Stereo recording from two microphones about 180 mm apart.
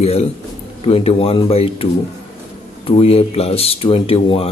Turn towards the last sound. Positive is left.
turn(degrees=30)  # may be behind; listen again after turning